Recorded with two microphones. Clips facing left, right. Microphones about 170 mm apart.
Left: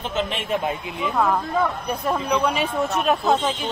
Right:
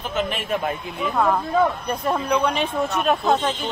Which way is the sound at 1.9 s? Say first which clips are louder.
Right 1 dB; centre (ahead or behind).